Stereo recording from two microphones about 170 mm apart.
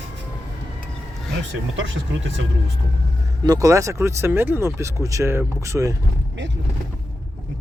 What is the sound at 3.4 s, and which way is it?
Speech, 20° right (ahead or behind).